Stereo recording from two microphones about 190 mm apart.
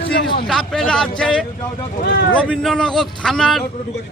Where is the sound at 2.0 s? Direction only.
55° left (ahead or behind).